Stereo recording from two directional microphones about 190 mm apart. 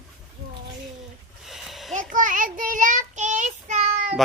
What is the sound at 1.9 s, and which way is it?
Child singing, 40° right (ahead or behind).